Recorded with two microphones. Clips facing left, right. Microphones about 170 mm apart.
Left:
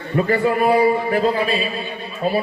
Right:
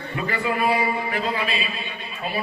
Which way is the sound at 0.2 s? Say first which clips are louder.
Left 7 dB; 40° left (ahead or behind).